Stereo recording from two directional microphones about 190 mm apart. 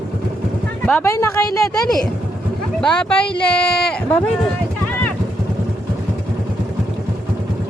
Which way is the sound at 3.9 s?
5° left (ahead or behind).